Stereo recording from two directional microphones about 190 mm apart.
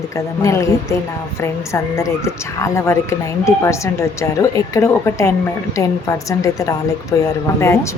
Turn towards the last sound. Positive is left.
turn(degrees=15)  # may be behind; listen again after turning